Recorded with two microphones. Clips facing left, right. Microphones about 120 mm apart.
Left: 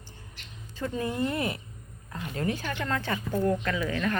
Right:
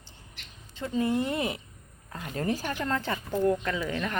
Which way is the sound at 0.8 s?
20° right (ahead or behind).